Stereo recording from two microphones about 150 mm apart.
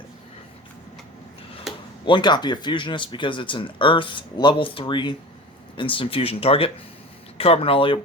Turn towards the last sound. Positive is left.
turn(degrees=35)  # may be behind; listen again after turning